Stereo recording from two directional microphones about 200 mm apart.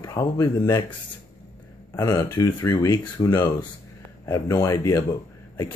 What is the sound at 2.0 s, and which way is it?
Speech, 20° left (ahead or behind).